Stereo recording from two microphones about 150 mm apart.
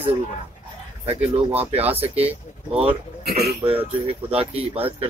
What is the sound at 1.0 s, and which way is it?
Speech, 45° right (ahead or behind).